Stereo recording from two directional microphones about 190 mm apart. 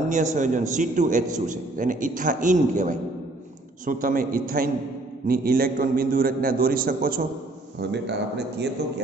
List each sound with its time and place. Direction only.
0.1 s a man's voice: 40° right (ahead or behind)
7.8 s a man's voice: 60° right (ahead or behind)